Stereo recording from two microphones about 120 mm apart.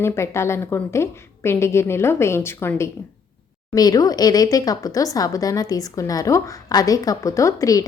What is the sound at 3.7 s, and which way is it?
A woman's voice, 30° left (ahead or behind).